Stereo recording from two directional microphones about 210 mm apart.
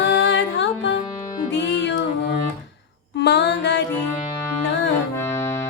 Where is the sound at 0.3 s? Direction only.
60° left (ahead or behind).